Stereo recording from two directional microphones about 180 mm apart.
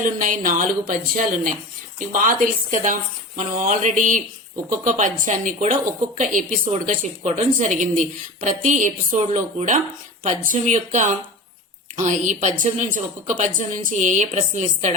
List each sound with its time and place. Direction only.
0.0 s a woman's voice: 45° right (ahead or behind)